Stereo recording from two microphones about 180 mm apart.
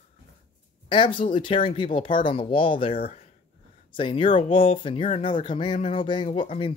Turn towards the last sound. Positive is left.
turn(degrees=30)  # may be behind; listen again after turning